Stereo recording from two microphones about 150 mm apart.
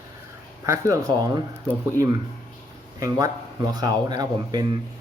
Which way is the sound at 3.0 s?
25° right (ahead or behind).